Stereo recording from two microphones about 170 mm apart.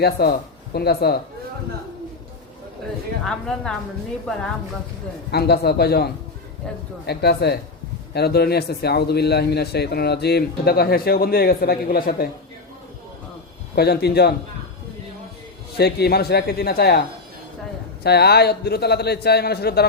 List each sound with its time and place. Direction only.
0.0 s a man's voice: 70° left (ahead or behind)
3.2 s a woman's voice: centre (ahead or behind)
5.3 s a man's voice: 70° left (ahead or behind)
13.7 s a man's voice: 70° left (ahead or behind)
15.8 s a man's voice: 70° left (ahead or behind)
18.0 s a man's voice: 70° left (ahead or behind)